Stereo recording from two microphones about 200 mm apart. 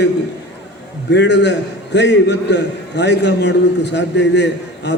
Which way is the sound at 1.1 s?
60° left (ahead or behind).